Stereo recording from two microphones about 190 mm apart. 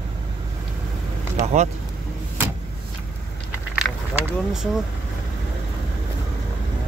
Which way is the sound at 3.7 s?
5° right (ahead or behind).